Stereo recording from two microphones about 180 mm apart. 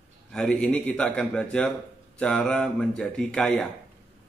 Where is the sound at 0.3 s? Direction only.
5° left (ahead or behind).